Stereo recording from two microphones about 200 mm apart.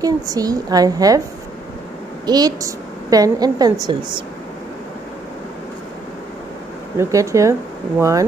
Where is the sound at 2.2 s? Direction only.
20° right (ahead or behind).